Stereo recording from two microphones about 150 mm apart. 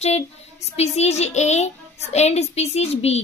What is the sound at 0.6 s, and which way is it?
A child's voice, 45° left (ahead or behind).